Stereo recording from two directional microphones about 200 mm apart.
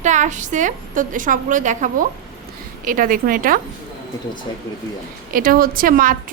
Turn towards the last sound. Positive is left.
turn(degrees=-45)  # may be behind; listen again after turning